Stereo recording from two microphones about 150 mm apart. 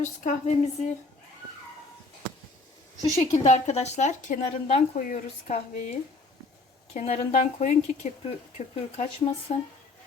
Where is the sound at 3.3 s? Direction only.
50° left (ahead or behind).